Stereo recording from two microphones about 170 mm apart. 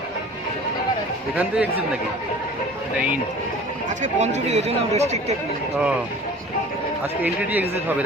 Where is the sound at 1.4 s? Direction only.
10° right (ahead or behind).